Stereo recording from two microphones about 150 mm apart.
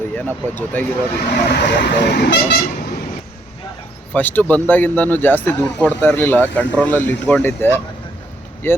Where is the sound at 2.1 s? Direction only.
90° left.